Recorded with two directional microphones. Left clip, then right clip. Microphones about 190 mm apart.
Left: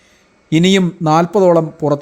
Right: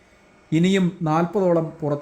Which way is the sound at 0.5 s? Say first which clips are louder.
Left 8 dB; 45° left (ahead or behind).